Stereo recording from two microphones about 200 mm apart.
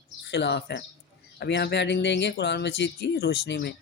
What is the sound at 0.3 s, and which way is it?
Speech, 60° left (ahead or behind).